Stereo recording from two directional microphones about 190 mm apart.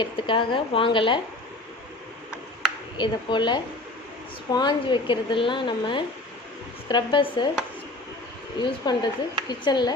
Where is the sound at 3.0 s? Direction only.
25° left (ahead or behind).